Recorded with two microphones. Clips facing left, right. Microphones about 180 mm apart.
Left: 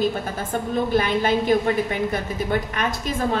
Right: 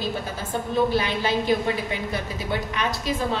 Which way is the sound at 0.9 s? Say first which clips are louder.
Left 4 dB; 50° left (ahead or behind).